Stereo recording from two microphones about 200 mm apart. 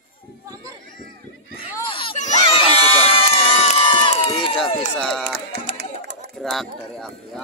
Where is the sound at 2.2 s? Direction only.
35° left (ahead or behind).